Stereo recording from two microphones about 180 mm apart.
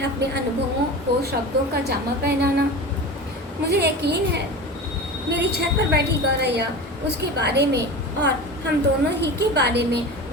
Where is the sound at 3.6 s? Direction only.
65° right (ahead or behind).